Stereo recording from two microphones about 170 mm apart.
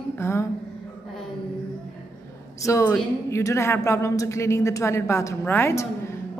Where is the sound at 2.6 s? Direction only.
15° left (ahead or behind).